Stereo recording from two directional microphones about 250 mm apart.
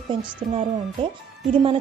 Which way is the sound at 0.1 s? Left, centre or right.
Centre.